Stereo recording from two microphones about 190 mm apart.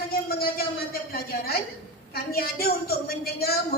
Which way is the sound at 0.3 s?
50° left (ahead or behind).